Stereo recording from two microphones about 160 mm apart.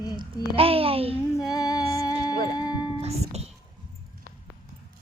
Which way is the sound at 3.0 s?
40° right (ahead or behind).